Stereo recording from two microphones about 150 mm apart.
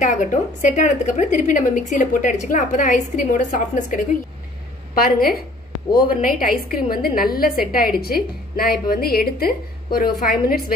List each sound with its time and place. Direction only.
0.0 s a woman's voice: 55° left (ahead or behind)
5.0 s a woman's voice: 90° left
5.9 s a woman's voice: 70° left (ahead or behind)
8.0 s a woman's voice: 85° left